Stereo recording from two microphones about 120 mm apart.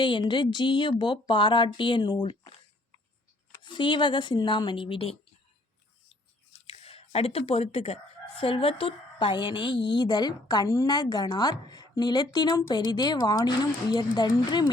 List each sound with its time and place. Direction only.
0.0 s a woman's voice: 40° left (ahead or behind)
3.6 s a woman's voice: 40° left (ahead or behind)
6.7 s a woman's voice: 55° left (ahead or behind); by 14.7 s 35° left (ahead or behind)